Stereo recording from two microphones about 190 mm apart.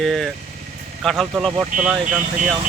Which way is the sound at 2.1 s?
40° right (ahead or behind).